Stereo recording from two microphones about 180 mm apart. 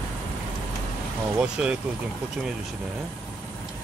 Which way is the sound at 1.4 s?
5° right (ahead or behind).